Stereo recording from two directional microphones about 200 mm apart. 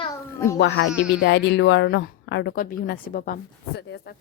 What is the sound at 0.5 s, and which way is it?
Speech, 60° left (ahead or behind).